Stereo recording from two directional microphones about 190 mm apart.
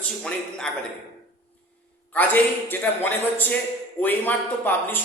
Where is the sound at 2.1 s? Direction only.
10° left (ahead or behind).